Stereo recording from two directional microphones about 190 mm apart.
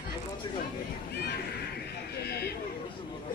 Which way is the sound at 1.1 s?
55° left (ahead or behind).